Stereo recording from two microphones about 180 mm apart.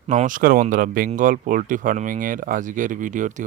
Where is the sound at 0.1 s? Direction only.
45° right (ahead or behind).